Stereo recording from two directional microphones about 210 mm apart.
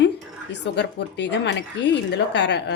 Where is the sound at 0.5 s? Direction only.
55° left (ahead or behind).